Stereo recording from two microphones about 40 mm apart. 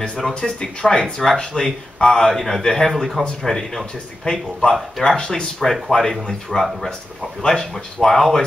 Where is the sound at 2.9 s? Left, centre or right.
Centre; by 5.5 s left.